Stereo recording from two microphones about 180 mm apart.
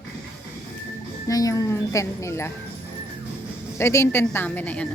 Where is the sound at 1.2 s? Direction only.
20° left (ahead or behind).